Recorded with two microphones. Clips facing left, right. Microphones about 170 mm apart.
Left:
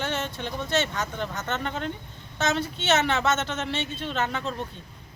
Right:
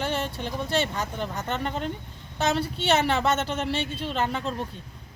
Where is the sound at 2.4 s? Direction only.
35° right (ahead or behind).